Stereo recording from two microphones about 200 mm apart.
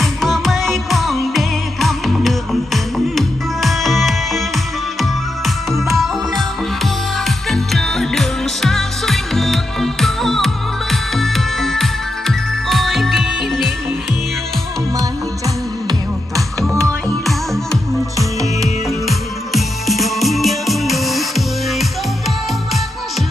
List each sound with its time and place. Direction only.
0.0 s music: centre (ahead or behind)
5.7 s music: centre (ahead or behind)
15.9 s music: 15° right (ahead or behind)
18.4 s music: centre (ahead or behind)